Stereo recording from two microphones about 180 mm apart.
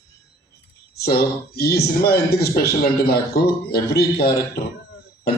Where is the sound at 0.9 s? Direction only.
60° left (ahead or behind).